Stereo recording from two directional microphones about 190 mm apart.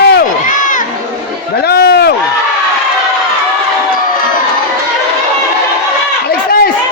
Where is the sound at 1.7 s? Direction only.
60° left (ahead or behind).